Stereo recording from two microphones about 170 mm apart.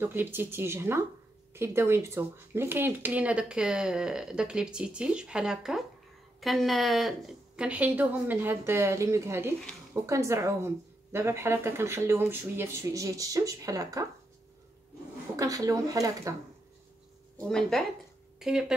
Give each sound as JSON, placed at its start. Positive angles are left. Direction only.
{"t": 0.0, "sound": "speech", "side_deg": -10}
{"t": 15.3, "sound": "speech", "side_deg": -20}
{"t": 17.5, "sound": "speech", "side_deg": 5}